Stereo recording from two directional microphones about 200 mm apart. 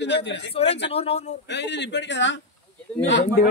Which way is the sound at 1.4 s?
60° left (ahead or behind).